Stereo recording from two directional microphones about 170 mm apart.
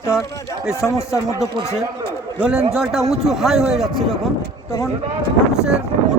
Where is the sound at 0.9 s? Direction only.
15° left (ahead or behind).